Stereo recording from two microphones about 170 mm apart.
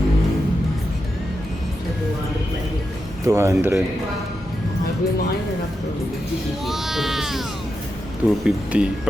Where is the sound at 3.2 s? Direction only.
15° right (ahead or behind).